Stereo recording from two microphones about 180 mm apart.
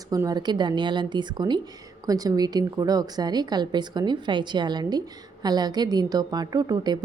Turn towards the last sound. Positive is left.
turn(degrees=-25)  # may be behind; listen again after turning